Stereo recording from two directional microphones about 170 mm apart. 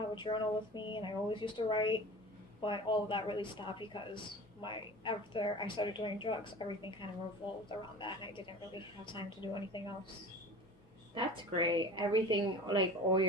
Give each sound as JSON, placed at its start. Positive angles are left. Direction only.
{"t": 0.0, "sound": "a woman's voice", "side_deg": 25}
{"t": 11.1, "sound": "a woman's voice", "side_deg": -25}